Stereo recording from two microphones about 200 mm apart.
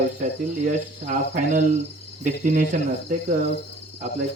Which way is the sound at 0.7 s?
40° right (ahead or behind).